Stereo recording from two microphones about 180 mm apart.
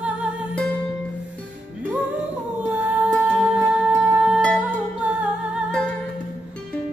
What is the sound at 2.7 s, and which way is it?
Music, 10° right (ahead or behind).